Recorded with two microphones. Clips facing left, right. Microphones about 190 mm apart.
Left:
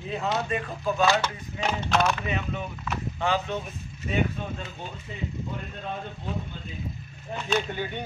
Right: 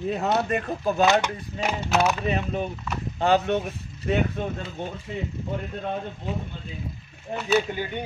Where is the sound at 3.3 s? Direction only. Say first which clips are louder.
Right 7 dB; 65° right (ahead or behind).